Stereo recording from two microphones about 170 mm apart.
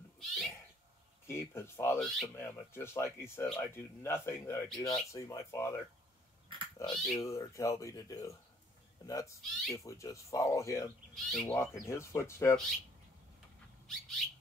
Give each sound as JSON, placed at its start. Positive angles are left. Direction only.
{"t": 0.2, "sound": "cat", "side_deg": 0}
{"t": 1.2, "sound": "speech", "side_deg": 15}
{"t": 2.0, "sound": "speech", "side_deg": 0}
{"t": 2.3, "sound": "speech", "side_deg": 15}
{"t": 3.4, "sound": "speech", "side_deg": 5}
{"t": 4.0, "sound": "speech", "side_deg": 15}
{"t": 6.8, "sound": "speech", "side_deg": 0}
{"t": 7.2, "sound": "speech", "side_deg": 20}
{"t": 9.4, "sound": "speech", "side_deg": 0}
{"t": 9.8, "sound": "speech", "side_deg": 20}
{"t": 11.1, "sound": "speech", "side_deg": 0}
{"t": 11.4, "sound": "speech", "side_deg": 15}
{"t": 13.8, "sound": "speech", "side_deg": 5}